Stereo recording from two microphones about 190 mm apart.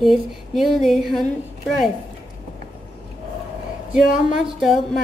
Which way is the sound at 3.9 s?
Centre (ahead or behind).